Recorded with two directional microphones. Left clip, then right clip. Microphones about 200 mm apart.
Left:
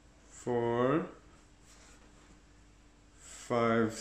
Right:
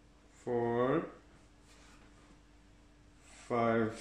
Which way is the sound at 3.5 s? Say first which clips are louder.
Left 2 dB; 30° left (ahead or behind).